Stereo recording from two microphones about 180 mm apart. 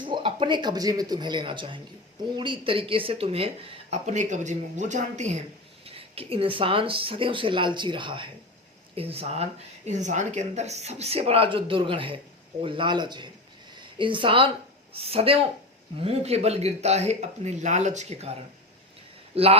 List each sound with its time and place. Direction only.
0.0 s speech: 25° right (ahead or behind)